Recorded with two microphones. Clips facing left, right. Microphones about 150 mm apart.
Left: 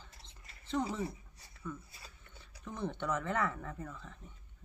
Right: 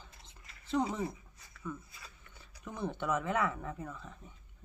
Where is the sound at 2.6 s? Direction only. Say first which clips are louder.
Right 1 dB; 10° right (ahead or behind).